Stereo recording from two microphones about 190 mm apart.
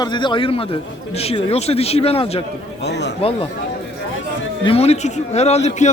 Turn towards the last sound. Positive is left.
turn(degrees=35)  # may be behind; listen again after turning